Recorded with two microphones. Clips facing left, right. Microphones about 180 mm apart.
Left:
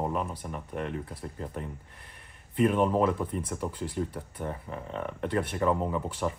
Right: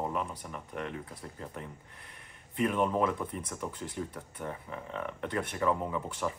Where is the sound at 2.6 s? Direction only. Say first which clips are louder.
Left 4 dB; 30° left (ahead or behind).